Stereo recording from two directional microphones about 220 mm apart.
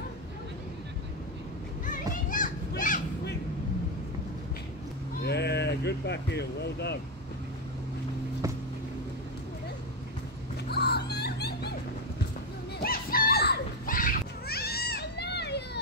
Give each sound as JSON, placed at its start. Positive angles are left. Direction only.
{"t": 2.2, "sound": "children playing", "side_deg": 40}
{"t": 5.2, "sound": "speech", "side_deg": 50}
{"t": 10.7, "sound": "music", "side_deg": 45}
{"t": 12.7, "sound": "children playing", "side_deg": 40}